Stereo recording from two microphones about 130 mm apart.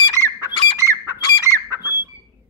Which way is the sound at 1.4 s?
25° right (ahead or behind).